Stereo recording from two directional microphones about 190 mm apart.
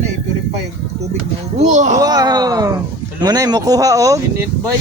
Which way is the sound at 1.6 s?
40° right (ahead or behind).